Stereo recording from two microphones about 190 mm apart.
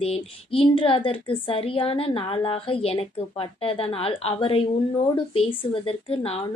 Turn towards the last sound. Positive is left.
turn(degrees=30)  # may be behind; listen again after turning